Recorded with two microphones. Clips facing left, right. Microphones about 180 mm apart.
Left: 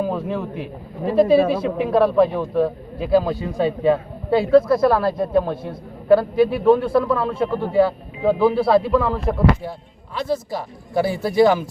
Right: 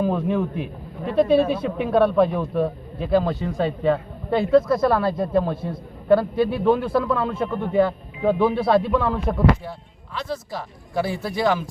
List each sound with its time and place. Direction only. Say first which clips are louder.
0.0 s a man's voice: right 2 dB; 5° left (ahead or behind)